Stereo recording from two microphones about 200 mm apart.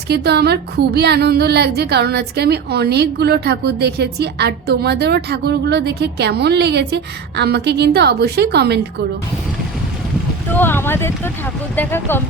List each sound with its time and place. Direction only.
0.1 s speech: 55° right (ahead or behind)
10.5 s speech: 10° left (ahead or behind)